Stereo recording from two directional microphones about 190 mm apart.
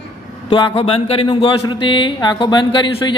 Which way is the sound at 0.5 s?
25° left (ahead or behind).